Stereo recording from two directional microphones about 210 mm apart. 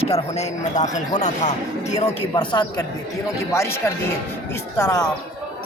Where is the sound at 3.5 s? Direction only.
15° left (ahead or behind).